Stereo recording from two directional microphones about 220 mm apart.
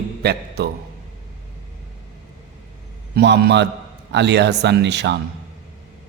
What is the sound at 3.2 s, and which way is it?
Speech, 50° right (ahead or behind).